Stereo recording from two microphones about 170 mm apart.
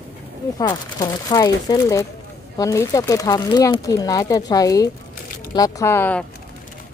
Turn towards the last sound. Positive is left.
turn(degrees=10)  # may be behind; listen again after turning